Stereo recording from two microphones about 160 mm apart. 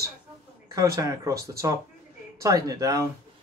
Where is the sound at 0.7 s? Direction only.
20° right (ahead or behind).